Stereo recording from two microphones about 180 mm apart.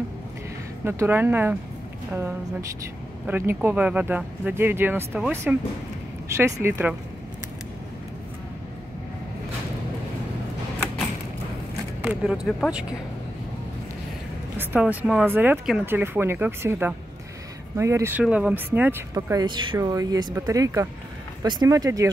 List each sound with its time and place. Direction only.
0.8 s speech: 10° right (ahead or behind)
3.3 s speech: 10° right (ahead or behind)
12.0 s speech: 5° right (ahead or behind)
14.6 s speech: 10° right (ahead or behind)